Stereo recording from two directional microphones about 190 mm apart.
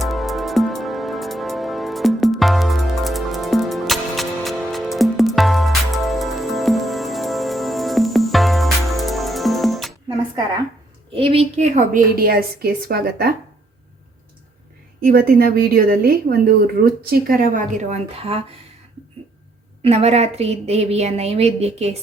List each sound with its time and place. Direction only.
0.0 s music: centre (ahead or behind)
11.1 s a woman's voice: 30° right (ahead or behind); by 13.3 s 55° right (ahead or behind)
15.0 s a woman's voice: 50° right (ahead or behind); by 18.4 s 30° right (ahead or behind)
19.8 s a woman's voice: 30° right (ahead or behind)